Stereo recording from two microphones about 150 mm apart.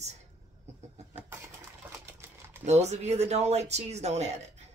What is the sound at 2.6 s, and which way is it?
Speech, 50° right (ahead or behind).